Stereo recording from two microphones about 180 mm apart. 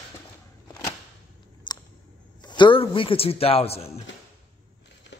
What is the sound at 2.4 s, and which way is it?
A man's voice, 25° left (ahead or behind).